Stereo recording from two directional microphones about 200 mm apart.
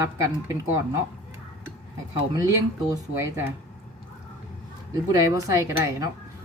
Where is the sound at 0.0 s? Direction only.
15° right (ahead or behind).